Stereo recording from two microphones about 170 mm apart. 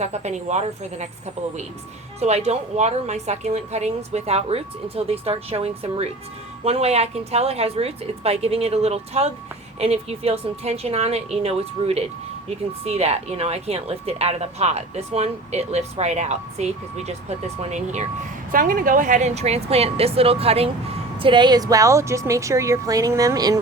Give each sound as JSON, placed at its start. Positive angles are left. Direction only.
{"t": 0.0, "sound": "speech", "side_deg": -40}
{"t": 2.2, "sound": "speech", "side_deg": -40}
{"t": 18.5, "sound": "a woman's voice", "side_deg": -55}